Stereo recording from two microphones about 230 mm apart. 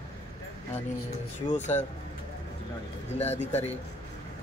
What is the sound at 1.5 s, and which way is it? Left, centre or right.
Speech, left.